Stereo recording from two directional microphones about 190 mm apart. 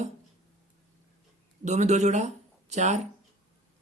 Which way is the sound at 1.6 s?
40° right (ahead or behind).